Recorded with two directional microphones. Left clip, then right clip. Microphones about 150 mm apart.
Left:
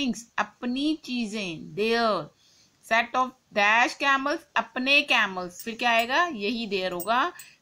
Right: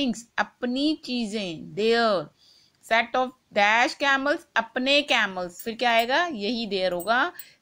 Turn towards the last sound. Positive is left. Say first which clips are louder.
# right 1 dB
turn(degrees=-35)  # may be behind; listen again after turning